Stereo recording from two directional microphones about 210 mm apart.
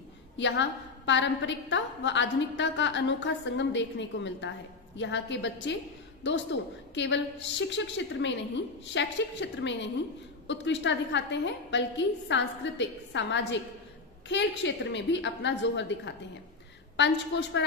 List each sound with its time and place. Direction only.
0.4 s a woman's voice: 60° left (ahead or behind)
16.9 s a woman's voice: 55° left (ahead or behind)